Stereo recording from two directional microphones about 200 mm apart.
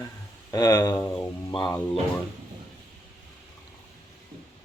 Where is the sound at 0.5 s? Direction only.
20° left (ahead or behind).